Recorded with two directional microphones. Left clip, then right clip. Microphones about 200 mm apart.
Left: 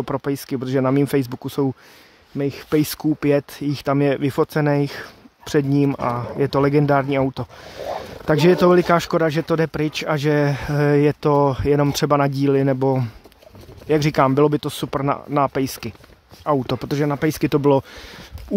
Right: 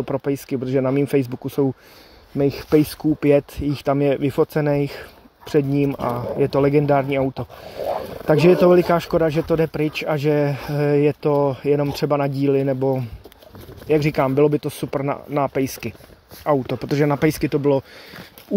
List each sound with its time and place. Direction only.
0.0 s speech: 15° left (ahead or behind)
2.3 s speech: 5° left (ahead or behind)
2.8 s speech: 25° left (ahead or behind)
3.2 s speech: 15° left (ahead or behind)
16.8 s speech: 10° left (ahead or behind)
17.3 s speech: 25° left (ahead or behind)